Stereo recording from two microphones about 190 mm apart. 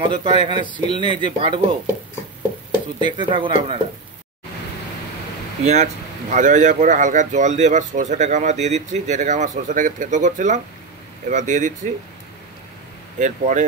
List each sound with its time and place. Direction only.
0.0 s speech: 25° right (ahead or behind)
3.0 s speech: 25° right (ahead or behind)
5.6 s speech: 35° right (ahead or behind)
13.2 s speech: 40° right (ahead or behind)